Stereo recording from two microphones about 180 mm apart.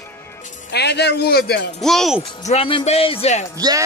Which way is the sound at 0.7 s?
70° left (ahead or behind).